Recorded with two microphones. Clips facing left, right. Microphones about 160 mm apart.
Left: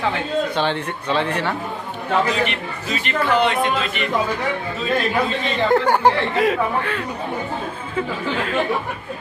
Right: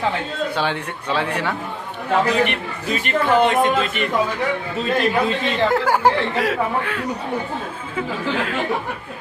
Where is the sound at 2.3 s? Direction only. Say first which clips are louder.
Right 3 dB; 55° right (ahead or behind).